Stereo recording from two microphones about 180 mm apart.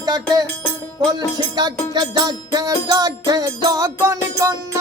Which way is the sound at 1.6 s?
20° right (ahead or behind).